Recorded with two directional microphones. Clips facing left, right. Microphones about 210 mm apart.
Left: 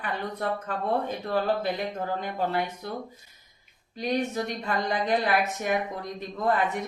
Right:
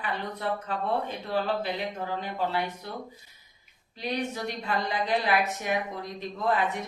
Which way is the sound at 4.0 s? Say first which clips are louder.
Left 4 dB; 45° left (ahead or behind).